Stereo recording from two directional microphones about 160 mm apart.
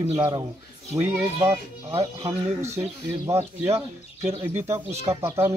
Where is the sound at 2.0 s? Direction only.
20° right (ahead or behind).